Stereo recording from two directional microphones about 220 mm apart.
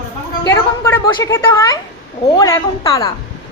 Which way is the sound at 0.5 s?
10° left (ahead or behind).